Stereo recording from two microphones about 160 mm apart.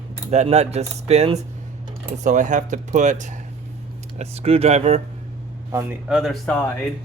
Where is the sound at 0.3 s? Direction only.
45° right (ahead or behind).